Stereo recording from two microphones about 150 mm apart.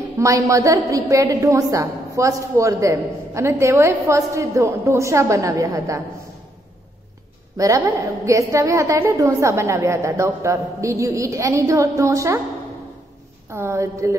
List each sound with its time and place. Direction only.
0.2 s a woman's voice: 20° right (ahead or behind)
7.5 s a woman's voice: 20° right (ahead or behind)
13.5 s a woman's voice: 15° right (ahead or behind)